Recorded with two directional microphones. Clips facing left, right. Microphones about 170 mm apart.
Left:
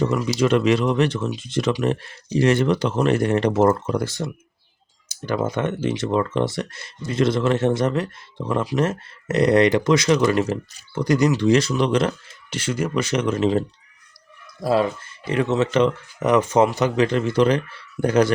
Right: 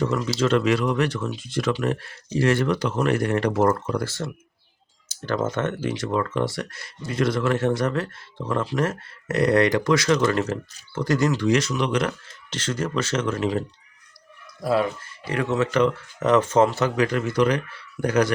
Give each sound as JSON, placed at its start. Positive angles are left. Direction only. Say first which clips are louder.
{"t": 0.3, "sound": "speech", "louder": "left 3 dB", "side_deg": 15}
{"t": 11.4, "sound": "speech", "louder": "left 4 dB", "side_deg": 30}
{"t": 12.5, "sound": "speech", "louder": "left 3 dB", "side_deg": 10}